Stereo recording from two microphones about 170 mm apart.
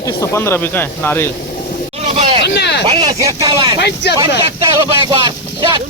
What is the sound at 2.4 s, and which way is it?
Speech, 85° left.